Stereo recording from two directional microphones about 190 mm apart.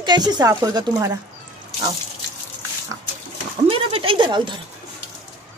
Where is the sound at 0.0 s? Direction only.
20° right (ahead or behind).